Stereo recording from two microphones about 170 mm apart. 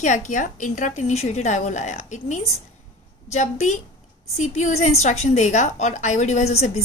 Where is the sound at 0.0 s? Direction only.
45° left (ahead or behind).